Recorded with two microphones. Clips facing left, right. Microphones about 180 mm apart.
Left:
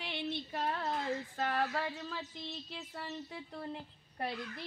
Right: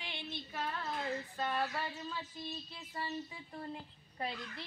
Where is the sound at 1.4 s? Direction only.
80° left.